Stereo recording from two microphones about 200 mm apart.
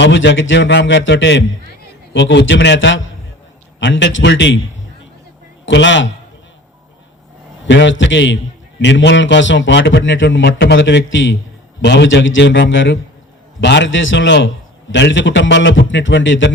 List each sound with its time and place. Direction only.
0.0 s speech: 65° left (ahead or behind)
5.6 s speech: 65° left (ahead or behind)
7.6 s a man's voice: 65° left (ahead or behind)